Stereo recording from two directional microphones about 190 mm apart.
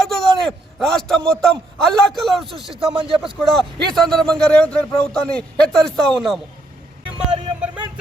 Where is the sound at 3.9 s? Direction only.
Centre (ahead or behind).